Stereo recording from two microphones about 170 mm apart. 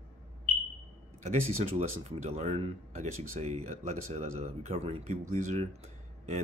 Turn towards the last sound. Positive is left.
turn(degrees=-40)  # may be behind; listen again after turning